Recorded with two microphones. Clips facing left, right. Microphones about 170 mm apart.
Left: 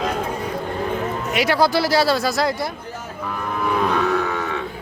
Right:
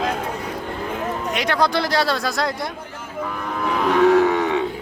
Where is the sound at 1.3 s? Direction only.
5° left (ahead or behind).